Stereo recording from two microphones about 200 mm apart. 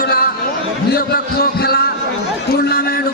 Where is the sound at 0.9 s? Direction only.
50° left (ahead or behind).